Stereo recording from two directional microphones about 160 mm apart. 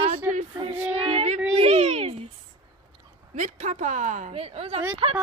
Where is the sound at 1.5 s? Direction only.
40° right (ahead or behind).